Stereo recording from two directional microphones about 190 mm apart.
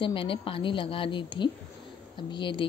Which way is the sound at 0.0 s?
25° left (ahead or behind).